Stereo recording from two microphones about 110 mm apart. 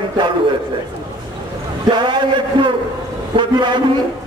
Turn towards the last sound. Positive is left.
turn(degrees=-45)  # may be behind; listen again after turning